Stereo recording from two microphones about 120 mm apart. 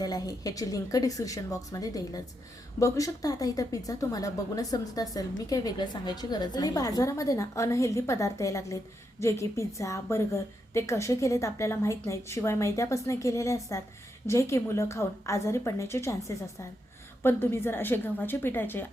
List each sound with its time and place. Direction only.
0.0 s a woman's voice: 30° left (ahead or behind)